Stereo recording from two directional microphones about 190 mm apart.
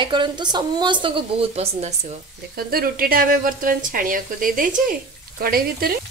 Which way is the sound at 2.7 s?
50° right (ahead or behind).